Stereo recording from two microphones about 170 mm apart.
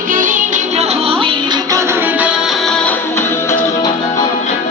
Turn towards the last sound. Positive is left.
turn(degrees=15)  # may be behind; listen again after turning